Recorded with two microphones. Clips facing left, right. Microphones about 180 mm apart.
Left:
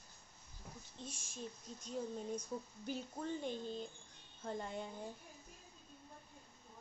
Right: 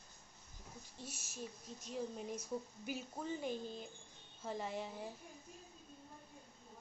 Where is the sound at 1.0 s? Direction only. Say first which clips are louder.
Even; 5° right (ahead or behind).